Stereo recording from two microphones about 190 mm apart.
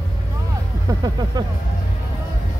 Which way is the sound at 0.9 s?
20° right (ahead or behind).